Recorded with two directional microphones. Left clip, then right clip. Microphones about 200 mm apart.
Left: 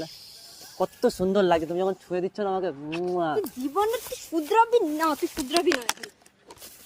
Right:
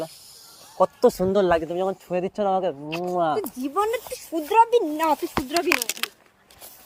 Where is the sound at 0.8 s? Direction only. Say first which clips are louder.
Right 6 dB; 30° right (ahead or behind).